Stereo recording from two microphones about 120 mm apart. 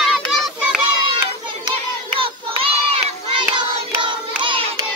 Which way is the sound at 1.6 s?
50° right (ahead or behind).